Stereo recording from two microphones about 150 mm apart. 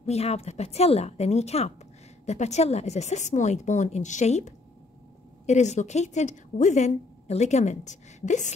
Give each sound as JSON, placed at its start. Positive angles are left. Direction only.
{"t": 0.0, "sound": "a woman's voice", "side_deg": 45}